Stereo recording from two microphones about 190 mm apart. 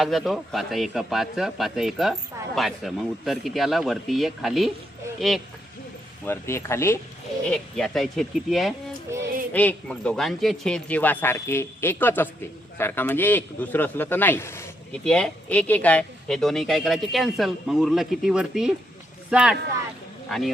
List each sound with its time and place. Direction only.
0.0 s speech: centre (ahead or behind)
6.2 s speech: 15° left (ahead or behind)
7.4 s speech: 5° left (ahead or behind)
9.1 s music: 15° right (ahead or behind)
9.5 s a man's voice: 10° left (ahead or behind)